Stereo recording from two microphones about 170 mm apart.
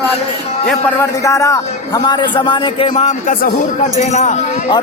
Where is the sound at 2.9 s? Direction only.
45° left (ahead or behind).